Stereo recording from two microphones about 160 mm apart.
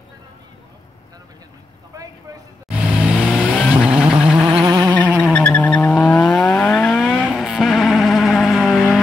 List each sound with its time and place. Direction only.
1.9 s vehicle: 20° right (ahead or behind)
2.7 s vehicle: 5° right (ahead or behind)
4.5 s a sound: 30° right (ahead or behind)
5.3 s vehicle: 10° left (ahead or behind)